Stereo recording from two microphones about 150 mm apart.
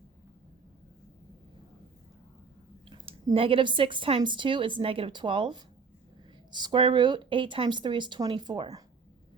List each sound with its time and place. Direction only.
2.9 s speech: 35° right (ahead or behind)